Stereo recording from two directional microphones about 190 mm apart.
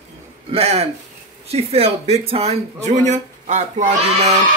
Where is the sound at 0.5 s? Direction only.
35° right (ahead or behind).